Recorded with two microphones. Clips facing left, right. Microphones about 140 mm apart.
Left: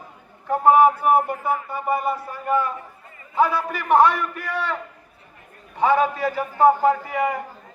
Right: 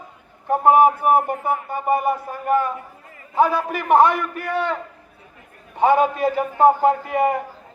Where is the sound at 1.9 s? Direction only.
20° right (ahead or behind).